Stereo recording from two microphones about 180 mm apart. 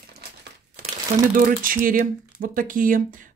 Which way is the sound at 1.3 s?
50° right (ahead or behind).